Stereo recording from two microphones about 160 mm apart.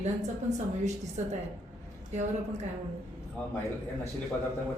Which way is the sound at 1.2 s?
45° right (ahead or behind).